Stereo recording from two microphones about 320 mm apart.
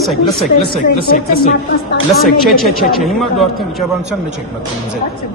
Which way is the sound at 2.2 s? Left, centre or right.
Centre.